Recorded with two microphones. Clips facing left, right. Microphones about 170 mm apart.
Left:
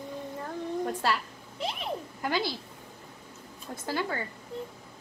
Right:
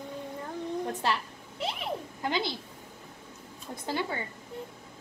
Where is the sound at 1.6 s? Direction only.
25° right (ahead or behind).